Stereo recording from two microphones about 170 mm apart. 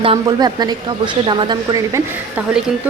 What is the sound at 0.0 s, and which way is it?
Speech, 30° right (ahead or behind).